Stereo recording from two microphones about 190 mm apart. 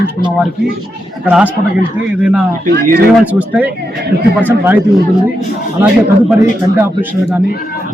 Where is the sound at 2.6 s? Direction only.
50° right (ahead or behind).